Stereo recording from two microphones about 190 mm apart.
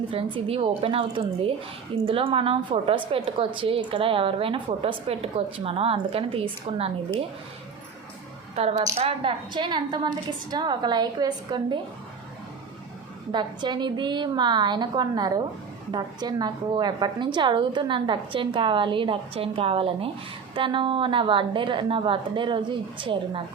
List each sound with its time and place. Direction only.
0.1 s a woman's voice: 30° right (ahead or behind)
8.5 s a woman's voice: 35° right (ahead or behind)
13.3 s a woman's voice: 25° right (ahead or behind)